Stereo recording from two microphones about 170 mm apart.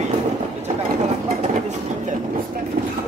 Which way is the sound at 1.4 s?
40° right (ahead or behind).